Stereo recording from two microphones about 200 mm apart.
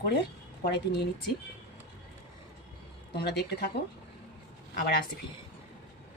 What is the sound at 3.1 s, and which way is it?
Speech, 55° left (ahead or behind).